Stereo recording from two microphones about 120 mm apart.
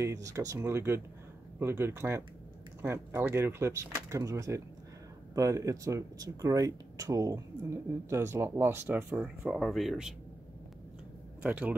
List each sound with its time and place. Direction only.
0.0 s speech: 25° right (ahead or behind); by 10.1 s 5° right (ahead or behind)
11.4 s speech: 15° right (ahead or behind)